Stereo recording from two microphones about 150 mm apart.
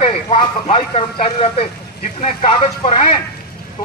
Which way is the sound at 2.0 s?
55° left (ahead or behind).